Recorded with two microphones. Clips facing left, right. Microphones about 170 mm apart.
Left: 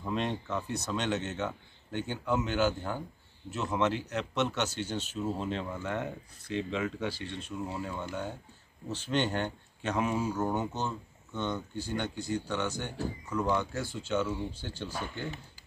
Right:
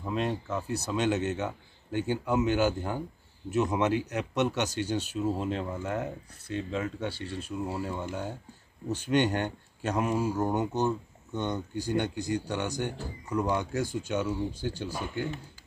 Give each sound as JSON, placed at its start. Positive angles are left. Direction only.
{"t": 0.0, "sound": "speech", "side_deg": -5}